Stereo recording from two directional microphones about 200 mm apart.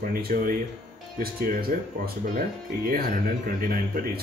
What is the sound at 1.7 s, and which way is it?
Speech, 45° right (ahead or behind).